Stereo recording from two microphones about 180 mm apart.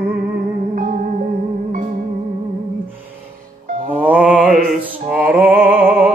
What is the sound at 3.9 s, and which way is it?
Mantra, 10° right (ahead or behind).